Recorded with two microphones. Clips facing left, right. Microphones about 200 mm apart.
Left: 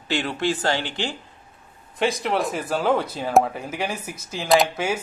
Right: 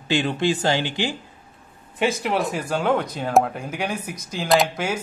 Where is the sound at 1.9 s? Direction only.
Centre (ahead or behind).